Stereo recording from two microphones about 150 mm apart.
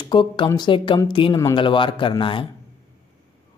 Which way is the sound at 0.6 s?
35° left (ahead or behind).